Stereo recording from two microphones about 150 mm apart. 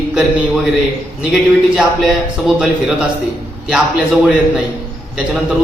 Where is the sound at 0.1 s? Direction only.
5° right (ahead or behind).